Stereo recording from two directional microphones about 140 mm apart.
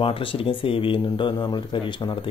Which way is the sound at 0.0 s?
40° left (ahead or behind).